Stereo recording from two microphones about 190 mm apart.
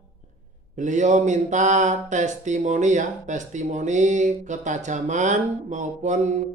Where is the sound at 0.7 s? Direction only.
40° right (ahead or behind).